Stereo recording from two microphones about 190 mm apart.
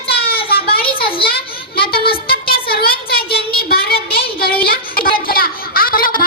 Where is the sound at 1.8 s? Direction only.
55° left (ahead or behind).